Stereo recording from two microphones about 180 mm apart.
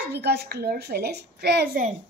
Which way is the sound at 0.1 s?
65° right (ahead or behind).